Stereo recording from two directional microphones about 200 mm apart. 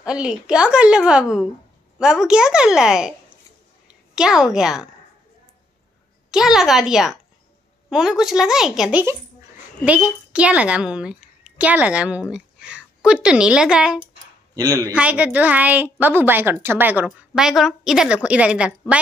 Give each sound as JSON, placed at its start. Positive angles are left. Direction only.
{"t": 0.0, "sound": "a woman's voice", "side_deg": -5}
{"t": 6.3, "sound": "a woman's voice", "side_deg": 0}
{"t": 14.5, "sound": "a woman's voice", "side_deg": -15}